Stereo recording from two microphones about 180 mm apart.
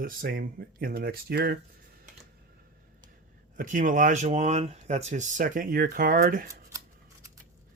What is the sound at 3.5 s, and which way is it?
Speech, 45° right (ahead or behind).